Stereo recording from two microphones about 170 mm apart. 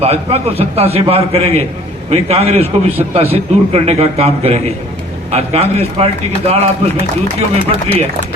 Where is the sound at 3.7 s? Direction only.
35° right (ahead or behind).